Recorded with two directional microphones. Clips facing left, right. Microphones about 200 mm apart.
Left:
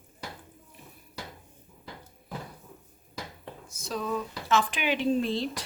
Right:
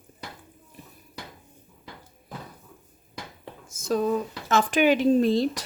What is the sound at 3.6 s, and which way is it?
Speech, 45° right (ahead or behind).